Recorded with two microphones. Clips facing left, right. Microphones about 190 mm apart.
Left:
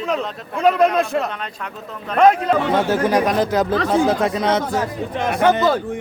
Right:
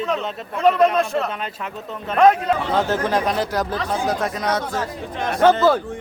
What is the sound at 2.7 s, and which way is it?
Speech, 10° left (ahead or behind).